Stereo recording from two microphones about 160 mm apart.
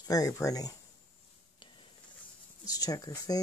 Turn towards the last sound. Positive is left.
turn(degrees=20)  # may be behind; listen again after turning